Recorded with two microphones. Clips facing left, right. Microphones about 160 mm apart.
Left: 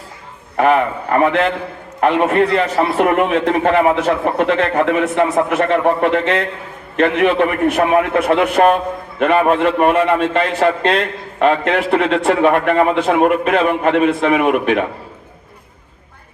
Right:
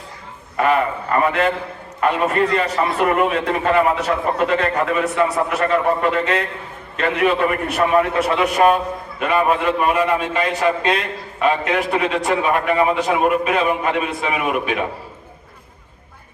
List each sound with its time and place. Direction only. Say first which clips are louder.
0.5 s a man's voice: left 4 dB; 55° left (ahead or behind)
2.4 s a man's voice: left 4 dB; 80° left; by 14.8 s 60° left (ahead or behind)